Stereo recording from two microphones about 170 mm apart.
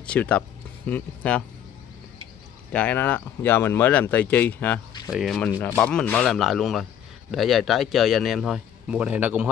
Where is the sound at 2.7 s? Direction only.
10° left (ahead or behind).